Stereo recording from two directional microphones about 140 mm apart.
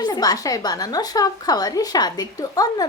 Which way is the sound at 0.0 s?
25° left (ahead or behind).